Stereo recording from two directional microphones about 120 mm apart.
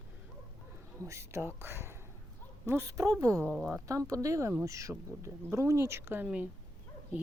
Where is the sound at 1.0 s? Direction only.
25° right (ahead or behind).